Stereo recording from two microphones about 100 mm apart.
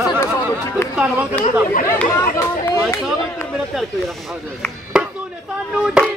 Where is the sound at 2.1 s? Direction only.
30° left (ahead or behind).